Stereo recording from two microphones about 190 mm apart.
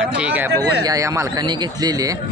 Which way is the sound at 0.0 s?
5° right (ahead or behind).